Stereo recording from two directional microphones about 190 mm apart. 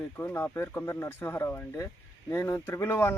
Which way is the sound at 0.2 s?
10° left (ahead or behind).